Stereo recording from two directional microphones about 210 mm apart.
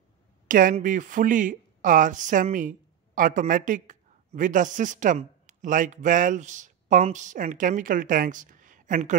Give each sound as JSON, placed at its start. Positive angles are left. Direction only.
{"t": 0.5, "sound": "speech", "side_deg": -40}